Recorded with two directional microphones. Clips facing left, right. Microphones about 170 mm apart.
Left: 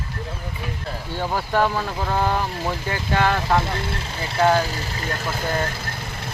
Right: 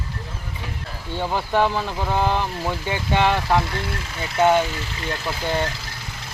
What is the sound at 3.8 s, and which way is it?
Speech, 30° left (ahead or behind).